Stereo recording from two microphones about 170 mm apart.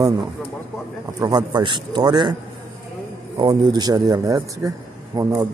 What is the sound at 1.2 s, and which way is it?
Speech, 25° right (ahead or behind).